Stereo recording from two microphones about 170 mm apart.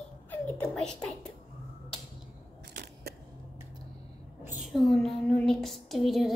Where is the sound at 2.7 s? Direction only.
70° right (ahead or behind).